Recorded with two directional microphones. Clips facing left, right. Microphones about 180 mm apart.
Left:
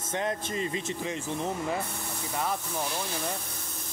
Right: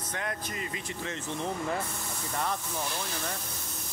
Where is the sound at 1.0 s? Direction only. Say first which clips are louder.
Right 1 dB; 10° left (ahead or behind).